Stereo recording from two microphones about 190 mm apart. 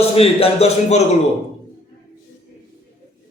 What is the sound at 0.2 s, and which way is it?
Speech, 30° left (ahead or behind).